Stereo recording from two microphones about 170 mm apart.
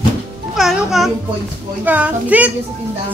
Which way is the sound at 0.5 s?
Centre (ahead or behind).